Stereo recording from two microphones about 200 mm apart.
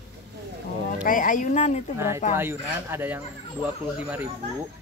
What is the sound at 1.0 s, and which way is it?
Speech, 40° left (ahead or behind).